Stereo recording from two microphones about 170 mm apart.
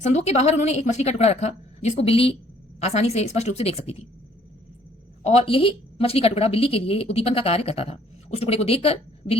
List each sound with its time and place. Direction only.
0.0 s a woman's voice: 40° left (ahead or behind)
5.2 s a woman's voice: 35° left (ahead or behind)